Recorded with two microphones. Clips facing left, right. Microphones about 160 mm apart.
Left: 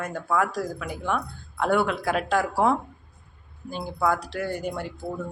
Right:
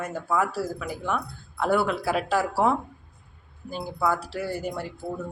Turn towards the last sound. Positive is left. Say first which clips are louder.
# left 1 dB
turn(degrees=-5)  # may be behind; listen again after turning